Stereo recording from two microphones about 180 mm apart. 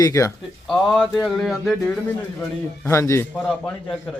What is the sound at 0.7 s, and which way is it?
A man's voice, centre (ahead or behind).